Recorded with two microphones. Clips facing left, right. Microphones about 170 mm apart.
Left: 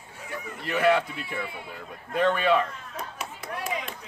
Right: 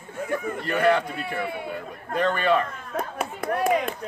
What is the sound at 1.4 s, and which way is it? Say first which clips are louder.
Speech: right 8 dB; 60° right (ahead or behind).